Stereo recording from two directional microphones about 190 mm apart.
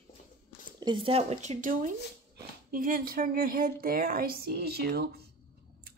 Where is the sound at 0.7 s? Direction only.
25° right (ahead or behind).